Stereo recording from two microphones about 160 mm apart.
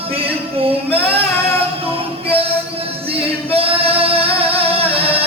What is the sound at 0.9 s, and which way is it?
Female singing, 35° right (ahead or behind).